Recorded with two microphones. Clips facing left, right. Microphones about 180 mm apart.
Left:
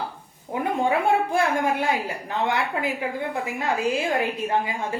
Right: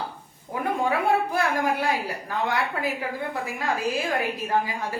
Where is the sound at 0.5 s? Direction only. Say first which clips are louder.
Left 2 dB; 25° left (ahead or behind).